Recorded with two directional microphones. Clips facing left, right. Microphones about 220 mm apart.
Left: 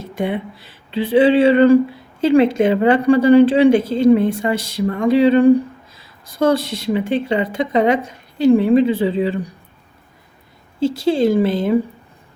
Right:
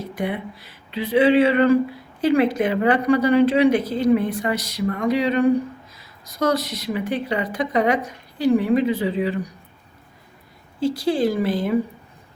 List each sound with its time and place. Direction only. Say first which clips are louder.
0.0 s speech: left 4 dB; 25° left (ahead or behind)
10.8 s speech: left 4 dB; 25° left (ahead or behind)